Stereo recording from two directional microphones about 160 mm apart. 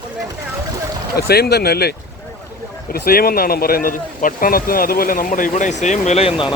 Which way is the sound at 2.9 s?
70° left (ahead or behind).